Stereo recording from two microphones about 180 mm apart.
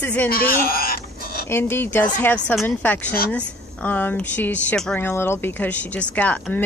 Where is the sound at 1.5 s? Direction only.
15° left (ahead or behind).